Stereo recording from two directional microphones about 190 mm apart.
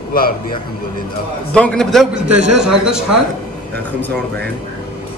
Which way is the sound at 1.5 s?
5° left (ahead or behind).